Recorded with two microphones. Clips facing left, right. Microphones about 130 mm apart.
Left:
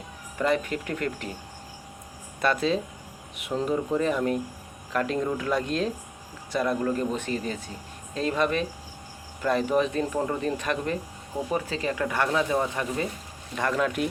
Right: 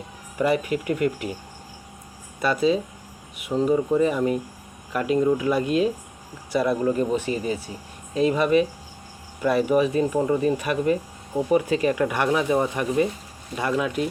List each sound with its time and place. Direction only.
0.3 s speech: 10° right (ahead or behind)
2.4 s speech: 5° right (ahead or behind)